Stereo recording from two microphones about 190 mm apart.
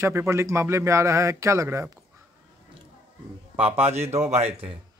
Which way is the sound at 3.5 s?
30° right (ahead or behind).